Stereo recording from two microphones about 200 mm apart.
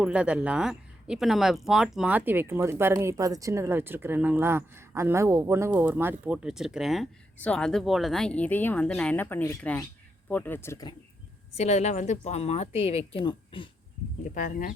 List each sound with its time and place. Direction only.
0.0 s speech: 5° right (ahead or behind); by 10.9 s 15° left (ahead or behind)
11.5 s a woman's voice: 35° left (ahead or behind)
14.3 s a woman's voice: 40° left (ahead or behind)